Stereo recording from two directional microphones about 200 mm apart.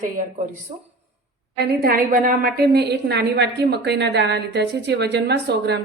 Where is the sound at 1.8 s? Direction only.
45° right (ahead or behind).